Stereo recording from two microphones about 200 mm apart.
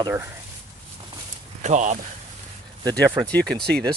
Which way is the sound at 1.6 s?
35° right (ahead or behind).